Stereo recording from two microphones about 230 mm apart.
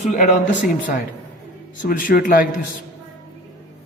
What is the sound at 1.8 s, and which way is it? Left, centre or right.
Speech, left.